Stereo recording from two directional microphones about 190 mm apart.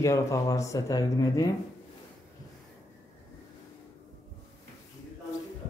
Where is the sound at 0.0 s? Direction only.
15° left (ahead or behind).